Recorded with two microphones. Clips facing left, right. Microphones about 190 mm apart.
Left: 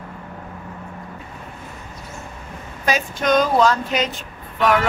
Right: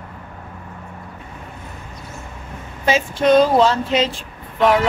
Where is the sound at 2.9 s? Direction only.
30° right (ahead or behind).